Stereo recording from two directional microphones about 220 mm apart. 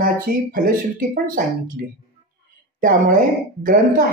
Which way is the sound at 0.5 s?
40° right (ahead or behind).